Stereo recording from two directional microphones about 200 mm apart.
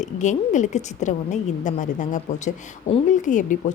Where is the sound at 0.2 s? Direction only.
40° left (ahead or behind).